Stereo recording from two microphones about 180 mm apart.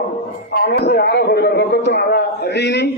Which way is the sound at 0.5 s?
65° left (ahead or behind).